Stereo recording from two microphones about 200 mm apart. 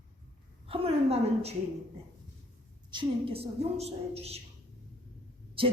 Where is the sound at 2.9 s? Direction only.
30° right (ahead or behind).